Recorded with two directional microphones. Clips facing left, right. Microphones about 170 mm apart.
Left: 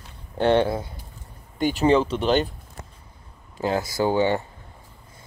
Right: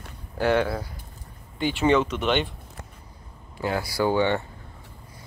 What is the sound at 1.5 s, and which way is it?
Speech, 40° left (ahead or behind).